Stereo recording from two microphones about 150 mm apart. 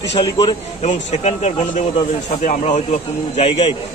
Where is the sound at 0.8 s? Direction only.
50° left (ahead or behind).